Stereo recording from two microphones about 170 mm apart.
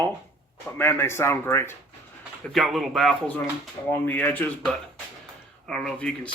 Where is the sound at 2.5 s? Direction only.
Centre (ahead or behind).